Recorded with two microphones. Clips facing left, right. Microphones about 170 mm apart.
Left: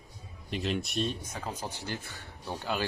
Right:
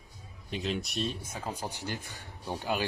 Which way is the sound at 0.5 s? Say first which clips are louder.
Left 2 dB; centre (ahead or behind).